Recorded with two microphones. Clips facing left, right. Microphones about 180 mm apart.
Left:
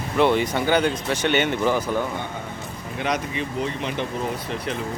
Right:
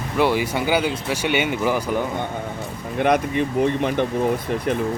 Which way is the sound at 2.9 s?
55° right (ahead or behind).